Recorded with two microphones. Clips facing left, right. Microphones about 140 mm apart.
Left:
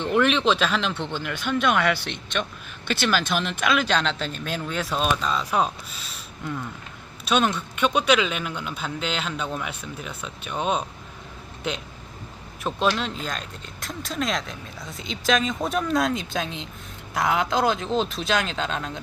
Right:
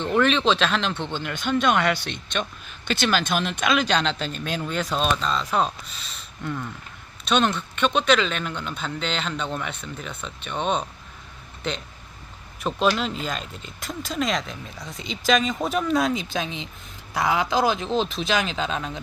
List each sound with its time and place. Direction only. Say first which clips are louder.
0.0 s a man's voice: even; 5° left (ahead or behind)